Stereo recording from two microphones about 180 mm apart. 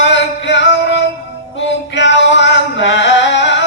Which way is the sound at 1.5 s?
85° left.